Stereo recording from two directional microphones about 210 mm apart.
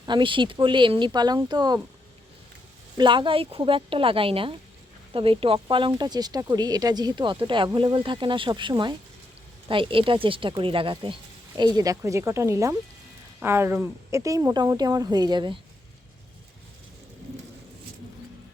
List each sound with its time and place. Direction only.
0.0 s speech: 20° right (ahead or behind)
3.0 s a woman's voice: 20° right (ahead or behind)